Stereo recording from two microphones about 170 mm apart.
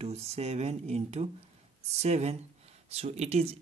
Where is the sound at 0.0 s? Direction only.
40° right (ahead or behind).